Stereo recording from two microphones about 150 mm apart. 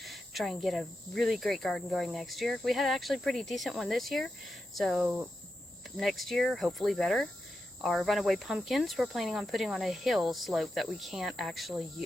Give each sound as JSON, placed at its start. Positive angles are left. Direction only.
{"t": 0.0, "sound": "speech", "side_deg": 0}